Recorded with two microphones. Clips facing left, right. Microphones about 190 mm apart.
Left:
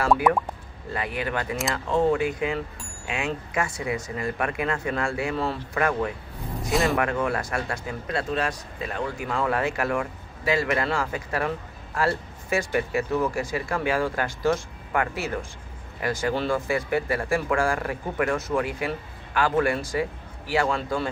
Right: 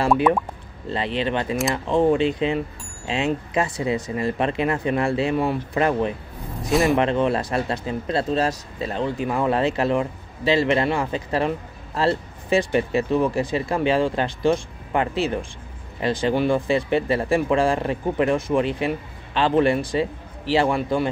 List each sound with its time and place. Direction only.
0.0 s speech: 15° right (ahead or behind)
13.4 s speech: 30° right (ahead or behind)
13.7 s speech: 20° right (ahead or behind)
16.3 s speech: 15° right (ahead or behind)
16.6 s a man's voice: 25° right (ahead or behind)
20.7 s speech: 15° right (ahead or behind)